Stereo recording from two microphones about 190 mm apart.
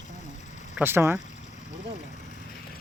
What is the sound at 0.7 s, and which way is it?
Speech, 10° right (ahead or behind).